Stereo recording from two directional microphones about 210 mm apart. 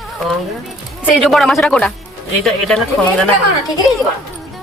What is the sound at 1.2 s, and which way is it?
Speech, centre (ahead or behind).